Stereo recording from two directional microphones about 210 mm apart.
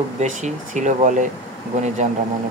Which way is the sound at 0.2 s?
35° right (ahead or behind).